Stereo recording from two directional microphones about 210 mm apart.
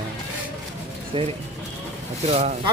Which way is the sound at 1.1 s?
25° right (ahead or behind).